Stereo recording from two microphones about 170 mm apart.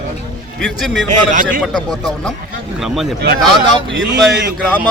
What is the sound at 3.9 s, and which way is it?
Speech, 90° right.